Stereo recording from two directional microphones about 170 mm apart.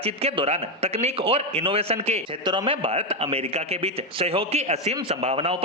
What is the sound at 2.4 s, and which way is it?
A man's voice, 25° right (ahead or behind).